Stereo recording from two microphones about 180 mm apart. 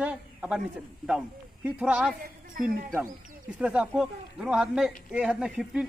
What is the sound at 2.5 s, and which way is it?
Speech, 50° right (ahead or behind).